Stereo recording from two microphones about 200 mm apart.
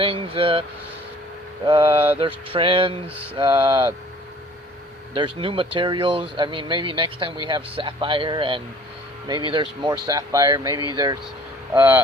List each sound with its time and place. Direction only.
0.0 s speech: 25° right (ahead or behind)
1.6 s speech: 25° right (ahead or behind)
5.1 s speech: 25° right (ahead or behind)